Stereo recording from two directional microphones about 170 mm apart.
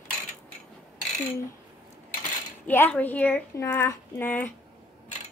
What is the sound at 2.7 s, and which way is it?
A woman's voice, 10° left (ahead or behind).